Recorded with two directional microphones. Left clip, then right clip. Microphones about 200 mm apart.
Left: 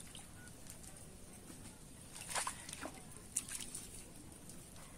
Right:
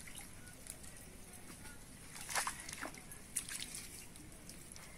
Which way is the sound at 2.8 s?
Centre (ahead or behind).